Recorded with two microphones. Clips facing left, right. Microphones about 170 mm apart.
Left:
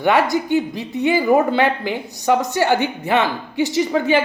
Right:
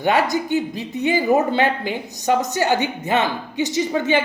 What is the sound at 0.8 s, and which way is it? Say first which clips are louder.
Speech: left 2 dB; 20° right (ahead or behind).